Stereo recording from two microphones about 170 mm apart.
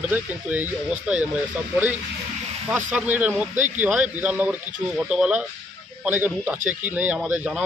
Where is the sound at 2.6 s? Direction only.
10° right (ahead or behind).